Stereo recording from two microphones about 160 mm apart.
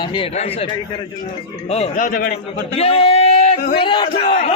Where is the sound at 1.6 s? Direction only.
40° left (ahead or behind).